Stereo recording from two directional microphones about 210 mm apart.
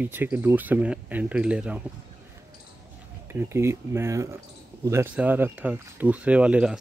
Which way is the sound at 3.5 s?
10° right (ahead or behind).